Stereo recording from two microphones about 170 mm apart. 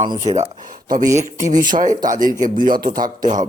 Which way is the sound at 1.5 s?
50° right (ahead or behind).